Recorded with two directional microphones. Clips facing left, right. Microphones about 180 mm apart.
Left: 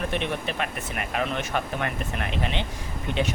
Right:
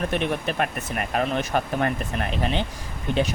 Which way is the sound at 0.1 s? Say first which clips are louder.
Right 3 dB; 45° right (ahead or behind).